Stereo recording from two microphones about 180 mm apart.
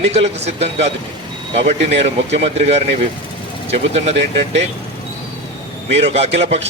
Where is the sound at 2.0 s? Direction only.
80° right.